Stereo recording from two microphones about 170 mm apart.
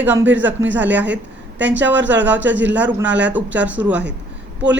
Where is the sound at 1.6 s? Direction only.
90° right.